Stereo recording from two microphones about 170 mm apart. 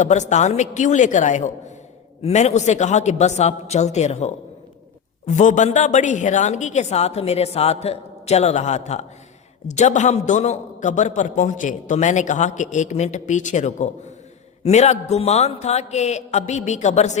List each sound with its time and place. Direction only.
0.0 s a man's voice: 45° left (ahead or behind)